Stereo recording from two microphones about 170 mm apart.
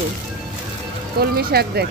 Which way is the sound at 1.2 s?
65° right (ahead or behind).